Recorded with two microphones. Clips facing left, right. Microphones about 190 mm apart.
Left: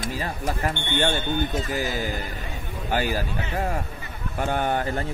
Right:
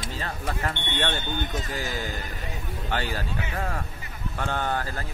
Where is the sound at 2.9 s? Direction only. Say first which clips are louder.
Left 5 dB; 10° left (ahead or behind).